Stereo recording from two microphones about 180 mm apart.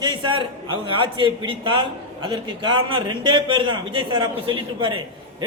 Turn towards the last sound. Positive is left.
turn(degrees=-30)  # may be behind; listen again after turning